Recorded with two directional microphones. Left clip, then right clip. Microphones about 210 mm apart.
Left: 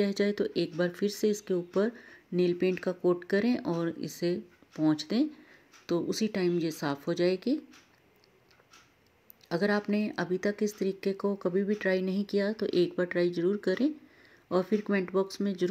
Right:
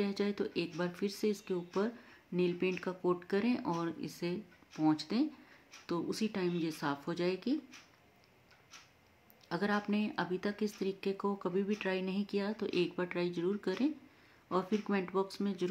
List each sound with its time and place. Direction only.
0.0 s speech: 25° left (ahead or behind)
9.5 s speech: 20° left (ahead or behind)